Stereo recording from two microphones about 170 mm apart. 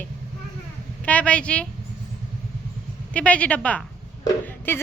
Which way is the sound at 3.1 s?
10° left (ahead or behind).